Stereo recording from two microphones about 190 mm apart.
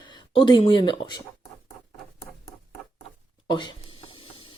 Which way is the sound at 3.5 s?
25° left (ahead or behind).